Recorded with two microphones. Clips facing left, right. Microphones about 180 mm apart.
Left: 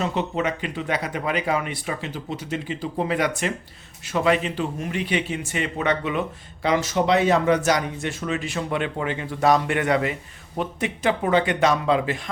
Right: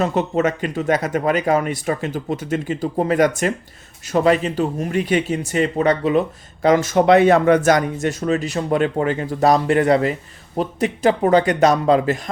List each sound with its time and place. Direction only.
0.0 s a man's voice: 45° right (ahead or behind)